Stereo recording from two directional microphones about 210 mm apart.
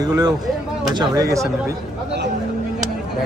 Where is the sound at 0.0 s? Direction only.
20° right (ahead or behind).